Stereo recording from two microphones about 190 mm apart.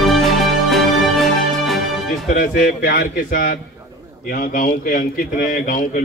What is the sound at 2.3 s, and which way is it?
A man's voice, 45° left (ahead or behind).